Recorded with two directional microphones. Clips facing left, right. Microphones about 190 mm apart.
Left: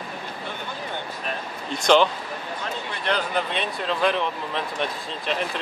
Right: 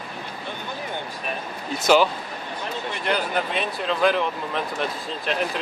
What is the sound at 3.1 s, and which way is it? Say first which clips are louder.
Speech: even; 5° right (ahead or behind).